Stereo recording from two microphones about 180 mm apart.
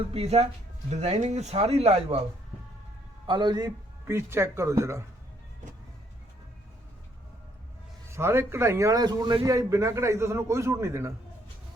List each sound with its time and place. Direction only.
0.1 s speech: 35° right (ahead or behind)
3.2 s a man's voice: 25° right (ahead or behind)
8.1 s a man's voice: 15° right (ahead or behind)